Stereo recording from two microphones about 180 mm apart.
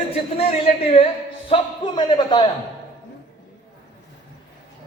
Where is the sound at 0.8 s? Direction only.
35° left (ahead or behind).